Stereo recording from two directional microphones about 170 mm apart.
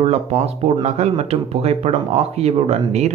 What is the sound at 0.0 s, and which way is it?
Speech, 40° right (ahead or behind).